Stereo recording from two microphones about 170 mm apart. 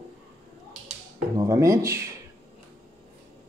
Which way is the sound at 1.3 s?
20° right (ahead or behind).